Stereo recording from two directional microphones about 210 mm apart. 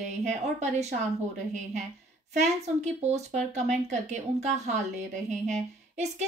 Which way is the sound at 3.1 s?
35° right (ahead or behind).